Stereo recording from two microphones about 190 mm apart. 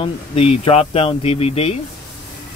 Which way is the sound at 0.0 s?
30° left (ahead or behind).